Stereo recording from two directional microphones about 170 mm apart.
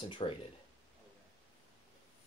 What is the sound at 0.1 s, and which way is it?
Speech, 30° left (ahead or behind).